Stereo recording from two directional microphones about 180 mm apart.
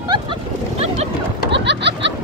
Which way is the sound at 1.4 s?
75° right (ahead or behind).